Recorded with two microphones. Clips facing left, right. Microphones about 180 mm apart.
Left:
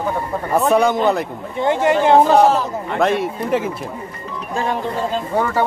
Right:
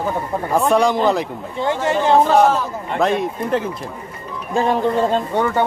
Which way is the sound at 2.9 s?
Centre (ahead or behind).